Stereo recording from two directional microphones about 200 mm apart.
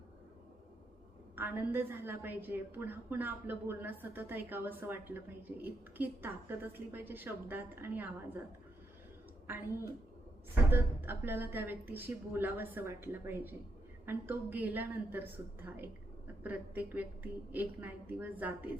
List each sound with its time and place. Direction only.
1.4 s a woman's voice: 10° right (ahead or behind)
10.5 s a woman's voice: 10° right (ahead or behind)